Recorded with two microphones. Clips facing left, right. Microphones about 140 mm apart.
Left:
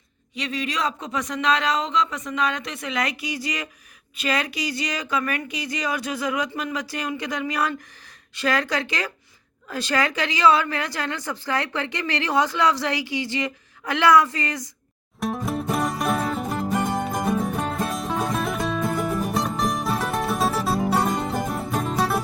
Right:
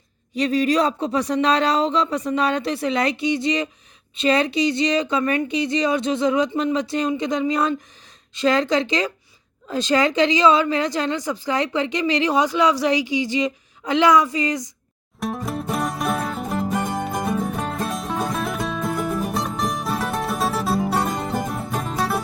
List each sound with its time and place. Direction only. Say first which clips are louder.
0.3 s a woman's voice: right 9 dB; 40° right (ahead or behind); by 14.7 s 15° right (ahead or behind)
15.2 s music: even; centre (ahead or behind)